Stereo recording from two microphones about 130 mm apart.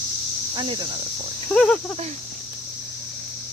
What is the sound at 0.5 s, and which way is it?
Speech, 35° right (ahead or behind).